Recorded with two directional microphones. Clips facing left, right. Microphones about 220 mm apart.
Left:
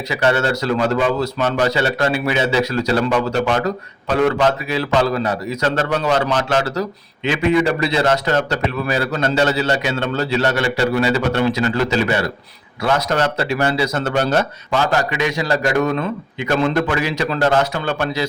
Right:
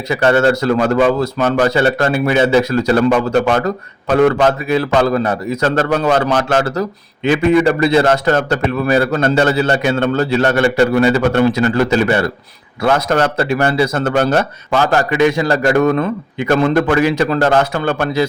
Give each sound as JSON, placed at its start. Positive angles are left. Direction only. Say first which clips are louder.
{"t": 0.1, "sound": "speech", "louder": "right 6 dB", "side_deg": -50}